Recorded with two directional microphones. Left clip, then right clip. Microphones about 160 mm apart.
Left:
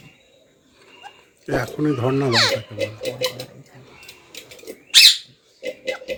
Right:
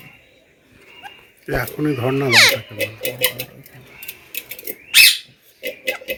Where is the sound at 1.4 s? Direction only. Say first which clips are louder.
Right 1 dB; centre (ahead or behind).